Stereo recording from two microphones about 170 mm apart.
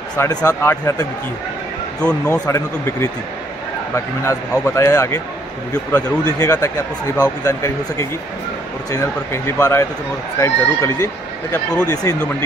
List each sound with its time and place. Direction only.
0.2 s a man's voice: 20° left (ahead or behind)
2.0 s a man's voice: 5° left (ahead or behind)
2.4 s a man's voice: 20° left (ahead or behind)
9.3 s a man's voice: 15° left (ahead or behind)